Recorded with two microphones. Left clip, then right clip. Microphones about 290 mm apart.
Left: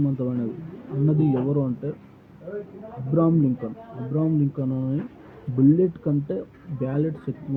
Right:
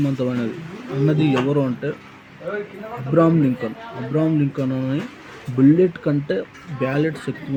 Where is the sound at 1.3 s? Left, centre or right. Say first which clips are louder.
Right 5 dB; right.